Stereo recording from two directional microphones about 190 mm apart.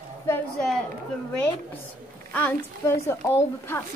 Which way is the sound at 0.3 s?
5° left (ahead or behind).